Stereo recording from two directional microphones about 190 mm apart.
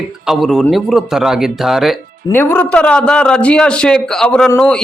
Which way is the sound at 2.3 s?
10° left (ahead or behind).